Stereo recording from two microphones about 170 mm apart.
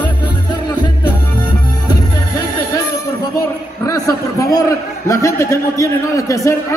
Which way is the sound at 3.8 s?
20° left (ahead or behind).